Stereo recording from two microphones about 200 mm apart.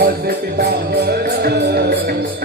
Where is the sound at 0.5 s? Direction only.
50° right (ahead or behind).